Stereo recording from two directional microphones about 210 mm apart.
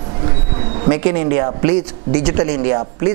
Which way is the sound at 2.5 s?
30° right (ahead or behind).